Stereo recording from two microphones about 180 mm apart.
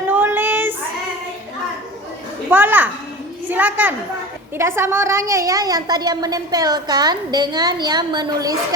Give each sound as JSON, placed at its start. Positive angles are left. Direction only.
{"t": 0.1, "sound": "child singing", "side_deg": -10}
{"t": 2.5, "sound": "a child's voice", "side_deg": -10}